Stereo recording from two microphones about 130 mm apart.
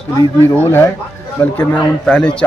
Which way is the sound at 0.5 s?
15° left (ahead or behind).